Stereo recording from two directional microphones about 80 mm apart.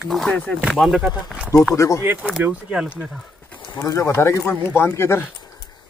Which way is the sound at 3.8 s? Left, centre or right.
Left.